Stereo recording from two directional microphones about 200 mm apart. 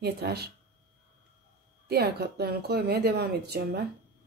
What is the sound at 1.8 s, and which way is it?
Speech, 55° right (ahead or behind).